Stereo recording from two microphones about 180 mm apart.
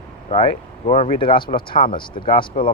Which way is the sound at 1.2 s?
30° left (ahead or behind).